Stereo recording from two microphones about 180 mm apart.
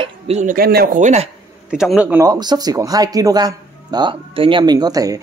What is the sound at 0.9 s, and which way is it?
Speech, 40° right (ahead or behind).